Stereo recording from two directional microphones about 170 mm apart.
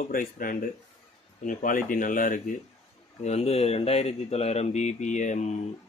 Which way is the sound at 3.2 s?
35° left (ahead or behind).